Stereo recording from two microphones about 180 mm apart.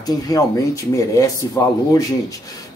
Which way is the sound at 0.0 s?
20° left (ahead or behind).